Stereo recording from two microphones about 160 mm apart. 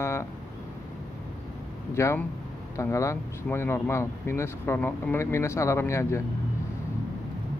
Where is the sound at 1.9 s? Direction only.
20° left (ahead or behind).